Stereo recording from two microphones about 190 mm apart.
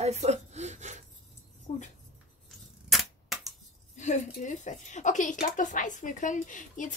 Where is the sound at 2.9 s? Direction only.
Centre (ahead or behind).